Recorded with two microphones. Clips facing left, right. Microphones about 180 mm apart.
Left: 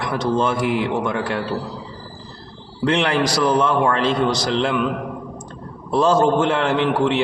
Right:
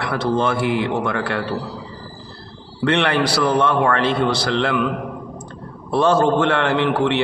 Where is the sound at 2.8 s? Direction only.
60° right (ahead or behind).